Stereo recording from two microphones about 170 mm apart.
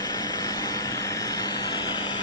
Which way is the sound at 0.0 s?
25° left (ahead or behind).